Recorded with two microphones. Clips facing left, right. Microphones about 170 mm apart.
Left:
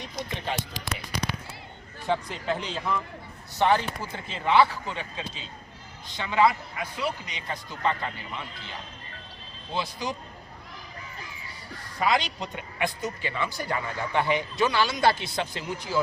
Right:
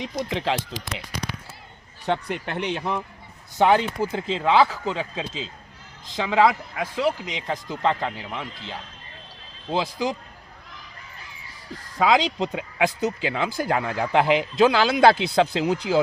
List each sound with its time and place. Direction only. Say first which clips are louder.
0.0 s speech: right 7 dB; 90° right
2.0 s speech: right 1 dB; 65° right (ahead or behind)
3.7 s speech: right 5 dB; 90° right
9.7 s speech: right 6 dB; 90° right
11.9 s speech: right 6 dB; 90° right